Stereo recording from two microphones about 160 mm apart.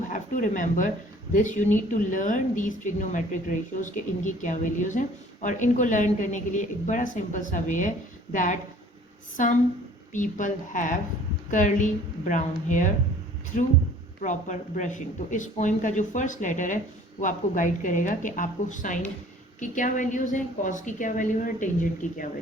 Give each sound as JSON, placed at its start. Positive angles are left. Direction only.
{"t": 0.1, "sound": "a woman's voice", "side_deg": 55}